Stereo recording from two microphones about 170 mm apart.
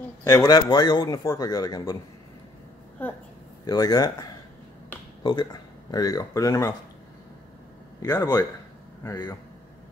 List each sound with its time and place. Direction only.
0.2 s a man's voice: 20° left (ahead or behind)
3.0 s a woman's voice: 10° left (ahead or behind)
3.6 s a man's voice: 20° left (ahead or behind)
8.0 s a man's voice: 20° left (ahead or behind)